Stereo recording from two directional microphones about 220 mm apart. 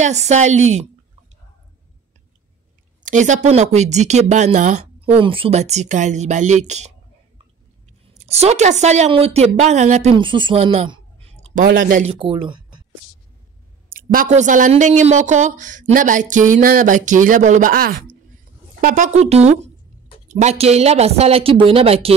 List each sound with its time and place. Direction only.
0.0 s speech: 30° right (ahead or behind)
3.0 s a sound: 35° right (ahead or behind)
3.4 s speech: 30° right (ahead or behind)
8.1 s a woman's voice: 30° right (ahead or behind)
12.1 s speech: 25° right (ahead or behind)
13.9 s speech: 35° right (ahead or behind)